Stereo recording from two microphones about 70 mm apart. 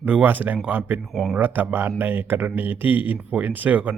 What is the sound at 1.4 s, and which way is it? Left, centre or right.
Speech, right.